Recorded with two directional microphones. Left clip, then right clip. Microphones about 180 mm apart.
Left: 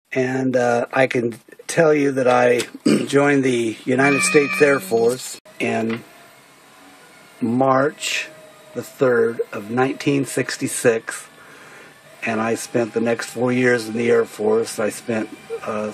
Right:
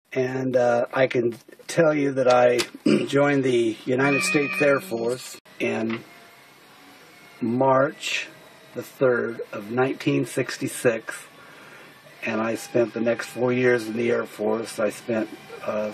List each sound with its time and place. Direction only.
0.1 s speech: 40° left (ahead or behind)
7.5 s speech: 40° left (ahead or behind)
12.2 s speech: 40° left (ahead or behind)